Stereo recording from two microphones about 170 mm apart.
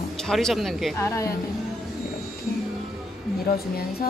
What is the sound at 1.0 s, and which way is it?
Speech, 15° left (ahead or behind).